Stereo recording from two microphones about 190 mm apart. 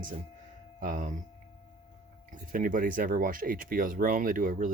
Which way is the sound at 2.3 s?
45° right (ahead or behind).